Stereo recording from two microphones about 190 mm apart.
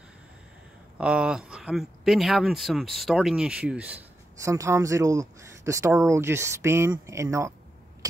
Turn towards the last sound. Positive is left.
turn(degrees=-15)  # may be behind; listen again after turning